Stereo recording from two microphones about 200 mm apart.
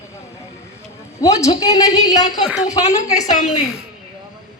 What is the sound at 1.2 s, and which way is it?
A woman's voice, 15° left (ahead or behind).